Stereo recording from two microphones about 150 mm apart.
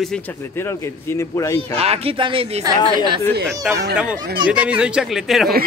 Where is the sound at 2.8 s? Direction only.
35° left (ahead or behind).